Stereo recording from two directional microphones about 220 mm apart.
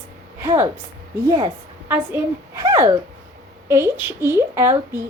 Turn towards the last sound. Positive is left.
turn(degrees=-10)  # may be behind; listen again after turning